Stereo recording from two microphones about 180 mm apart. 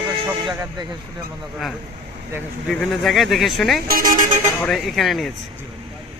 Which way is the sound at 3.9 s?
50° right (ahead or behind).